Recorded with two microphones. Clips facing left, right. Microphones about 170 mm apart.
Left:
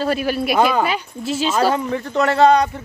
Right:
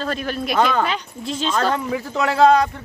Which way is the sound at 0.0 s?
10° left (ahead or behind).